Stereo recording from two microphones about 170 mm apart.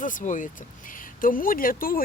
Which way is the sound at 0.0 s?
50° left (ahead or behind).